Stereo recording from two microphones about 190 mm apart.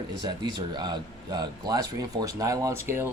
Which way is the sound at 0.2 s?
20° right (ahead or behind).